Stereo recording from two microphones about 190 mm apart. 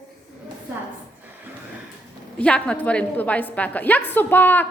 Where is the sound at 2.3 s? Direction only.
5° left (ahead or behind).